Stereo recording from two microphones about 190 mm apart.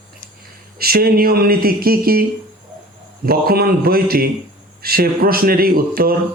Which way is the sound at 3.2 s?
55° right (ahead or behind).